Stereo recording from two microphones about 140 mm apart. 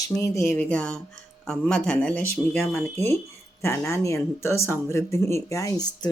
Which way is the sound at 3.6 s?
20° left (ahead or behind).